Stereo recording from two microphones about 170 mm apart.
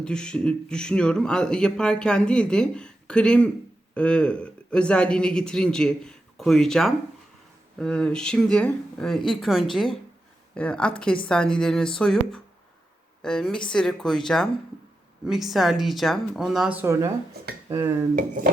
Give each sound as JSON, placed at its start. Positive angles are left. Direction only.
{"t": 0.0, "sound": "speech", "side_deg": 5}